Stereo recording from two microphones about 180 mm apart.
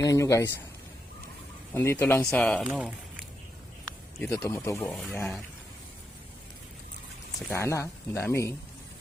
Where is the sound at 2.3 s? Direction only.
5° left (ahead or behind).